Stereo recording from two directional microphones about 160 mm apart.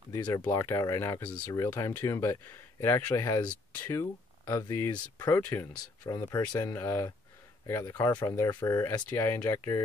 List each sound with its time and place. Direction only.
0.1 s speech: 20° left (ahead or behind)